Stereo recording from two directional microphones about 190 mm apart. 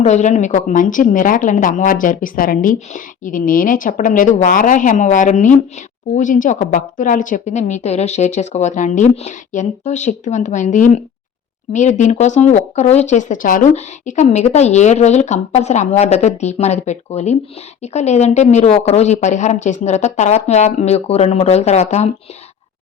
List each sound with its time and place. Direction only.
0.0 s speech: 40° left (ahead or behind)